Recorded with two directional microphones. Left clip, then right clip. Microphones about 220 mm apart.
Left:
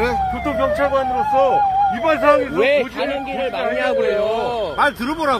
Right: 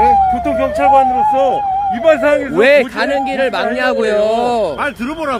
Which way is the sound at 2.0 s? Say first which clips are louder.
Right 6 dB; 45° right (ahead or behind).